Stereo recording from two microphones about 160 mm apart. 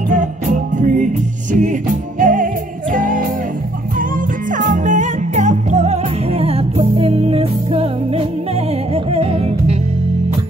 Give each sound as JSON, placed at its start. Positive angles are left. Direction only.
{"t": 0.1, "sound": "music", "side_deg": -50}
{"t": 4.5, "sound": "music", "side_deg": -55}